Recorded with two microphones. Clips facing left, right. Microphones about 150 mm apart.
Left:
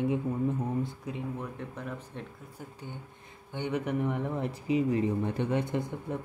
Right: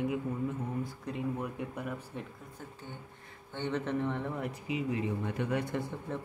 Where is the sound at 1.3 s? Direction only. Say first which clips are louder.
Right 1 dB; 10° right (ahead or behind).